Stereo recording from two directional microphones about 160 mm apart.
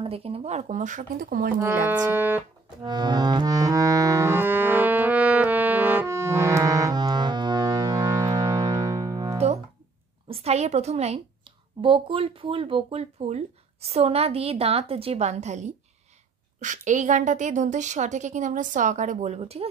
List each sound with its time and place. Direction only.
0.0 s a woman's voice: 35° right (ahead or behind); by 1.5 s 60° right (ahead or behind)
1.6 s speech: 15° right (ahead or behind)
2.8 s music: 30° right (ahead or behind)
10.2 s a woman's voice: 40° right (ahead or behind)